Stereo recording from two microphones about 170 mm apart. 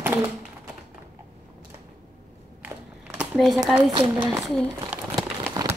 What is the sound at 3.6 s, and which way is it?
Speech, centre (ahead or behind).